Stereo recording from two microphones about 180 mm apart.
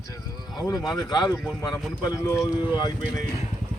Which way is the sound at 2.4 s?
25° left (ahead or behind).